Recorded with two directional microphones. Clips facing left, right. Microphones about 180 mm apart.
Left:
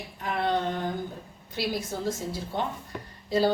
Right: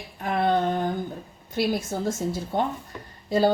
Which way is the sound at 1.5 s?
50° right (ahead or behind).